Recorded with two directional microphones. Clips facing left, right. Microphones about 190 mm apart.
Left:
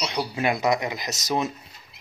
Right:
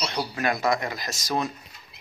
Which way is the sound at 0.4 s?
20° left (ahead or behind).